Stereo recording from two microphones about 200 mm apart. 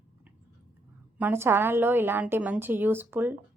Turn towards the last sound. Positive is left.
turn(degrees=-10)  # may be behind; listen again after turning